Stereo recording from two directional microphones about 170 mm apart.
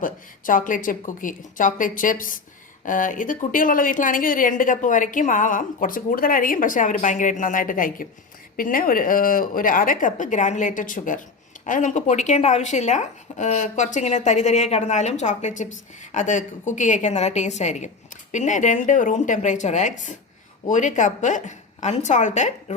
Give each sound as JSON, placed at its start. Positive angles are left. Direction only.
{"t": 0.0, "sound": "a woman's voice", "side_deg": 50}